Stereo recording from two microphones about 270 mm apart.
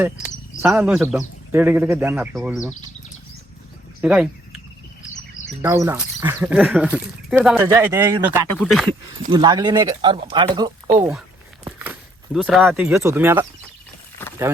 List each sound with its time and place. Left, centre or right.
0.6 s speech: centre
4.0 s speech: centre
5.6 s speech: centre
8.5 s speech: centre
9.3 s speech: centre
14.2 s a sound: centre